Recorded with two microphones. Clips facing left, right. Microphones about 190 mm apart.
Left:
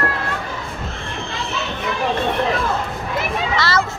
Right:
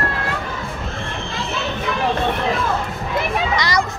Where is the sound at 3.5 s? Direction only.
15° right (ahead or behind).